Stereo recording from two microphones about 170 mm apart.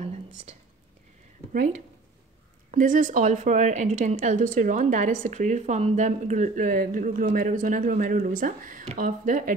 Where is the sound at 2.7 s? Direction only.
50° right (ahead or behind).